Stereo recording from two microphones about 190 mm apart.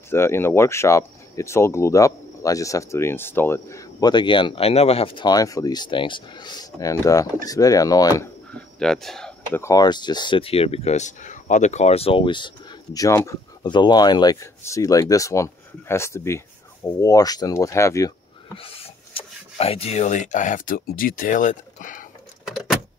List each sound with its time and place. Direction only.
0.1 s speech: 15° left (ahead or behind)
8.5 s speech: 5° left (ahead or behind)
9.6 s speech: 20° left (ahead or behind)
18.5 s speech: 30° left (ahead or behind)